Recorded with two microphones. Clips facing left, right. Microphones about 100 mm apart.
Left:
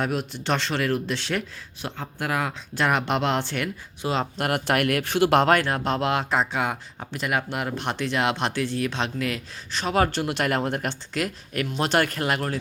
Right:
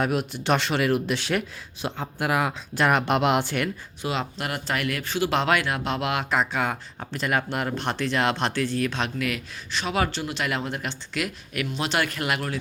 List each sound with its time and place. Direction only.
0.0 s speech: 5° right (ahead or behind)
4.0 s speech: 35° left (ahead or behind)
4.4 s speech: 55° left (ahead or behind); by 12.5 s 40° left (ahead or behind)